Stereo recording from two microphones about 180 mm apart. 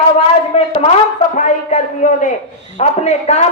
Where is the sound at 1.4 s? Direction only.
45° left (ahead or behind).